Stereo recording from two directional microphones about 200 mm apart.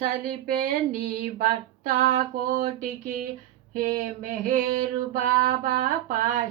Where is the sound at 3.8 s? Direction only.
40° right (ahead or behind).